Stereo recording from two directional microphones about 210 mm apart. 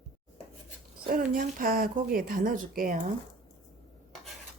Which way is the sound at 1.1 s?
40° right (ahead or behind).